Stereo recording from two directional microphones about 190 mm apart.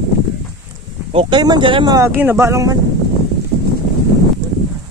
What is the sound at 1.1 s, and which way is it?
Speech, 25° right (ahead or behind).